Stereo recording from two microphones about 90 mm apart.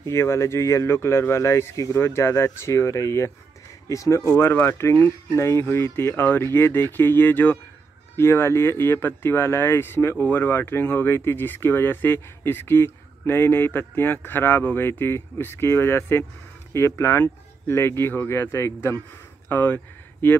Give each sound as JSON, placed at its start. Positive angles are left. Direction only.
{"t": 0.0, "sound": "speech", "side_deg": 30}